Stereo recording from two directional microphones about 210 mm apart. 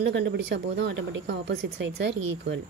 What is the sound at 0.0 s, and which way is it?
A woman's voice, 60° right (ahead or behind).